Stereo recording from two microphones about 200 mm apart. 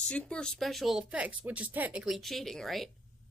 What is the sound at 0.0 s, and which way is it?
A woman's voice, 5° left (ahead or behind).